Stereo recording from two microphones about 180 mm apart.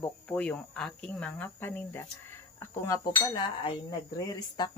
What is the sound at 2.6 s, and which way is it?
Cutlery, 15° left (ahead or behind).